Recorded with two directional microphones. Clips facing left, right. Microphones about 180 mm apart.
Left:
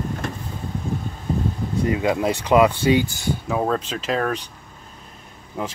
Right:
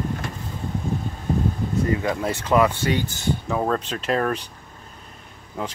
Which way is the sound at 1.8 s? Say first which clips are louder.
Left 5 dB; 15° left (ahead or behind).